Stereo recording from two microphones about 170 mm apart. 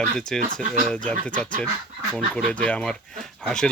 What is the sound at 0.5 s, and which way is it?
Speech, 45° right (ahead or behind).